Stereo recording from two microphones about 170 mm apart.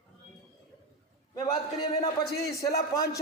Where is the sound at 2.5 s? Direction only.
20° left (ahead or behind).